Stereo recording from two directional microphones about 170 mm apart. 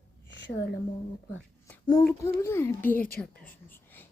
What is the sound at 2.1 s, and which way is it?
A woman's voice, 15° left (ahead or behind).